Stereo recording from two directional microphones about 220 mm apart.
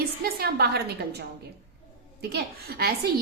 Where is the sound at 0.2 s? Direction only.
45° right (ahead or behind).